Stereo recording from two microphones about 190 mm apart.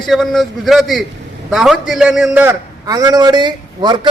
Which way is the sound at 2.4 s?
20° right (ahead or behind).